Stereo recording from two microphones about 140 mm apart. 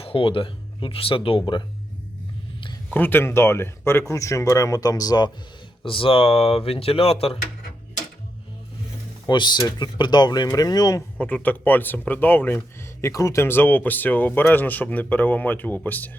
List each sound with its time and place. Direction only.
0.0 s speech: 40° left (ahead or behind)
2.9 s speech: 15° left (ahead or behind)
5.8 s speech: 40° left (ahead or behind)
9.2 s speech: 30° left (ahead or behind)
11.2 s speech: 10° left (ahead or behind)